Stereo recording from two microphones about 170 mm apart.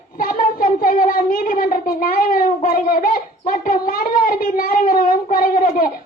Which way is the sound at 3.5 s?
55° left (ahead or behind).